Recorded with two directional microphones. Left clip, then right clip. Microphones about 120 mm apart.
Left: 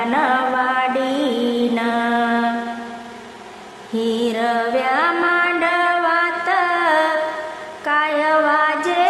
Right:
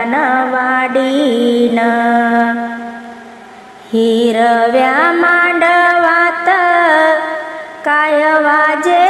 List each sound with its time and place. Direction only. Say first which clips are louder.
0.0 s music: right 4 dB; 30° right (ahead or behind)
3.9 s music: right 9 dB; 45° right (ahead or behind)